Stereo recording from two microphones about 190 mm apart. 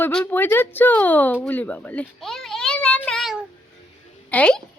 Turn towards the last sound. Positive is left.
turn(degrees=5)  # may be behind; listen again after turning